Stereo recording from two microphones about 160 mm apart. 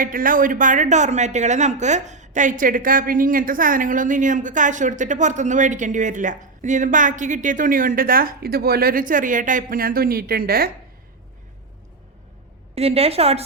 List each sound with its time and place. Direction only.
0.0 s a woman's voice: 60° right (ahead or behind)
12.7 s a woman's voice: 40° right (ahead or behind)